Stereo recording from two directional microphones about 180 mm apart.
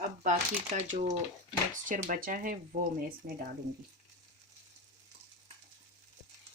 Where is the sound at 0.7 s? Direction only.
40° right (ahead or behind).